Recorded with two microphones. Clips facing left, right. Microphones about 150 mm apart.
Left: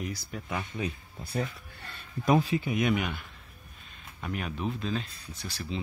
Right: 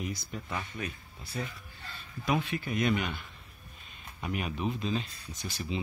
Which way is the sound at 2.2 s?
35° left (ahead or behind).